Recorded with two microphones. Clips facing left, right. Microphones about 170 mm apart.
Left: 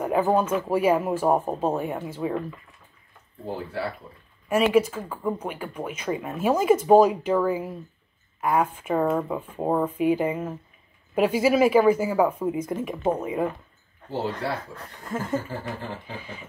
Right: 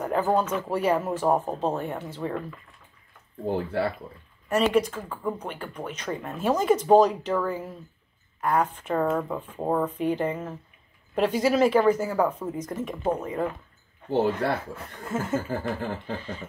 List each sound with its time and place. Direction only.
0.0 s speech: 10° left (ahead or behind)
3.4 s speech: 60° right (ahead or behind)
4.5 s speech: 5° left (ahead or behind)
14.7 s speech: 5° right (ahead or behind)